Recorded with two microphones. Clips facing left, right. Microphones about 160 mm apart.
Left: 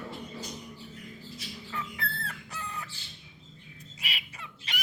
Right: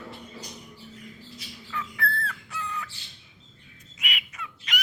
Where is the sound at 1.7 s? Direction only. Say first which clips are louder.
Right 6 dB; 30° left (ahead or behind).